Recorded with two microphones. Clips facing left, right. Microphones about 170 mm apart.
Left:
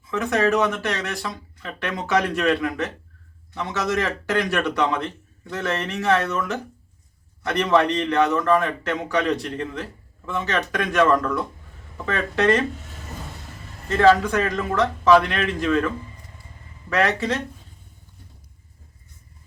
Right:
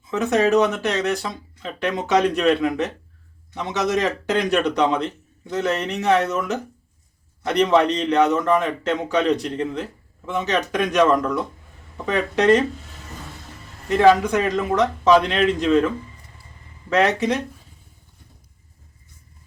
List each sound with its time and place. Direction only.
0.0 s speech: 20° right (ahead or behind)
13.8 s speech: 15° right (ahead or behind)
16.9 s speech: 20° right (ahead or behind)